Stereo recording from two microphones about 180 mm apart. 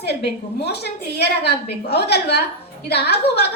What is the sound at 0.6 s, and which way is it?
A woman's voice, 65° left (ahead or behind).